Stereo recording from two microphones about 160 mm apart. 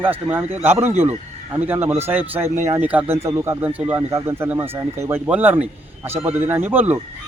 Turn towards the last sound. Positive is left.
turn(degrees=-10)  # may be behind; listen again after turning